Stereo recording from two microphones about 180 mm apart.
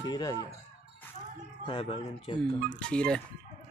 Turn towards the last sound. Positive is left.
turn(degrees=5)  # may be behind; listen again after turning